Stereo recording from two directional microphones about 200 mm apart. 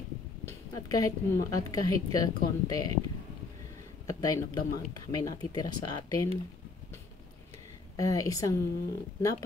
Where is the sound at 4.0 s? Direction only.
20° left (ahead or behind).